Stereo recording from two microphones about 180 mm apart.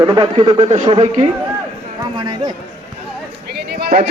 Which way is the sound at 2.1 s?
25° right (ahead or behind).